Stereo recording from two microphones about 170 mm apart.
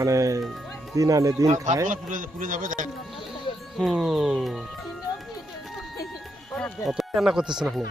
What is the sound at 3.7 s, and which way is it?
Speech, centre (ahead or behind).